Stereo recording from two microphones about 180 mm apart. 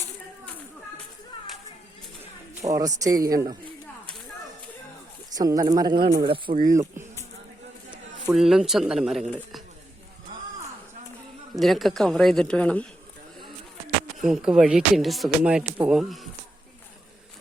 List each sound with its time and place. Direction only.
2.6 s speech: 20° right (ahead or behind)
5.3 s speech: 20° right (ahead or behind)
8.3 s speech: centre (ahead or behind)
11.5 s speech: centre (ahead or behind)
14.2 s speech: 5° right (ahead or behind)